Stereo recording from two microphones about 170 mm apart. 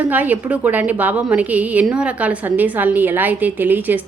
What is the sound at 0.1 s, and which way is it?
A woman's voice, 10° right (ahead or behind).